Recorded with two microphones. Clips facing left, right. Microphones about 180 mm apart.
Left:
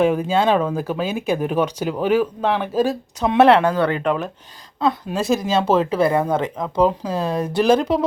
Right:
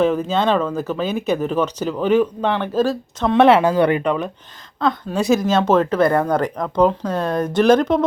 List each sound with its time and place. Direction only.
0.0 s speech: 10° left (ahead or behind); by 4.0 s 15° right (ahead or behind)
4.0 s a woman's voice: centre (ahead or behind)